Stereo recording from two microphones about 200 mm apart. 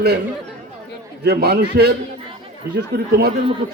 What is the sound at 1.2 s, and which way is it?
Speech, 55° right (ahead or behind).